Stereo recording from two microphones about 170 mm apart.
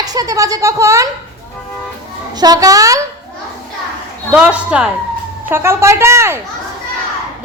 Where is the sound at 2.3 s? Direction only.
20° right (ahead or behind).